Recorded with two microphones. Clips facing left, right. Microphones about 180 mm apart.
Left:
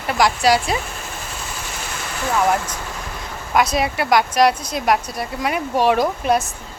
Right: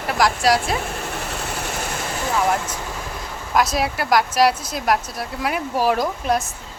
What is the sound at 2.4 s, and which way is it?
Speech, 5° right (ahead or behind).